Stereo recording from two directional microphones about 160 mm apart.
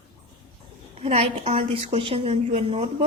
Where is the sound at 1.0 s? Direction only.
35° right (ahead or behind).